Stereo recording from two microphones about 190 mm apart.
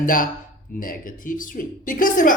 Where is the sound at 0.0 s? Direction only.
45° left (ahead or behind).